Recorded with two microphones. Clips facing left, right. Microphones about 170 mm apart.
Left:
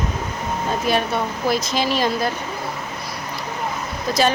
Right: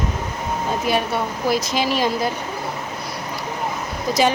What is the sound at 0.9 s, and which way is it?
Speech, 10° right (ahead or behind).